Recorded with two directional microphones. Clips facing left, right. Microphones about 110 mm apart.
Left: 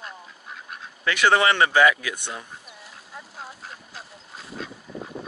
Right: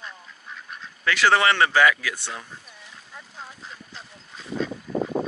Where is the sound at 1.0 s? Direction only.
20° left (ahead or behind).